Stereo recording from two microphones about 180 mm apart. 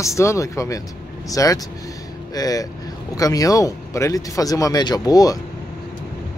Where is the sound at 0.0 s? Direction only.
15° left (ahead or behind).